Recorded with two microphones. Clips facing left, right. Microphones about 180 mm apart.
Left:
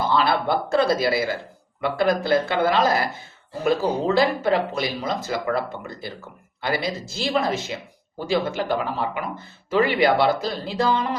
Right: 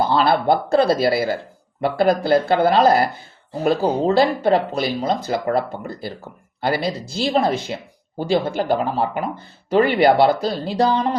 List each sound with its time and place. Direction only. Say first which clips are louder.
0.1 s speech: right 4 dB; 30° right (ahead or behind)